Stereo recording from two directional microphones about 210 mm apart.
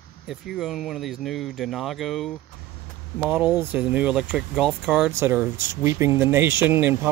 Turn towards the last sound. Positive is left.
turn(degrees=-10)  # may be behind; listen again after turning